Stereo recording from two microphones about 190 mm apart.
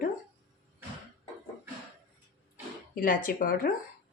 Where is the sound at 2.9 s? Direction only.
45° left (ahead or behind).